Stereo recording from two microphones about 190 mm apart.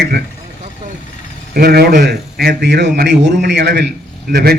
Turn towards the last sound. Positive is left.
turn(degrees=-55)  # may be behind; listen again after turning